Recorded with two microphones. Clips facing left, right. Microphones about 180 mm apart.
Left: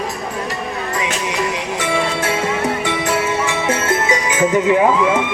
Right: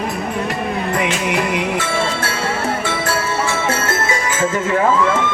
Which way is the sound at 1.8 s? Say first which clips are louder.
Left 1 dB; 15° left (ahead or behind).